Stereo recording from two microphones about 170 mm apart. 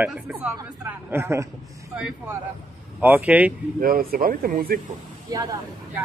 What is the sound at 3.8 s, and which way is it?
Speech, 60° right (ahead or behind).